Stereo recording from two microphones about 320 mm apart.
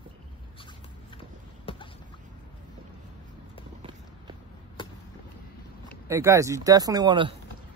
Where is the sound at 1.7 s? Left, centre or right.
Centre.